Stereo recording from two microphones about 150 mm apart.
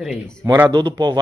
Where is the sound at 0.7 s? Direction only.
30° right (ahead or behind).